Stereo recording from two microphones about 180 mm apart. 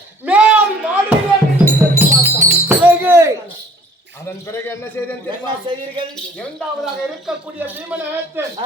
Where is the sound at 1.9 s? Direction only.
10° right (ahead or behind).